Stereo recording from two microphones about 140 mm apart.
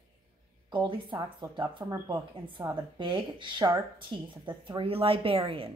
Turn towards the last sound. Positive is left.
turn(degrees=-40)  # may be behind; listen again after turning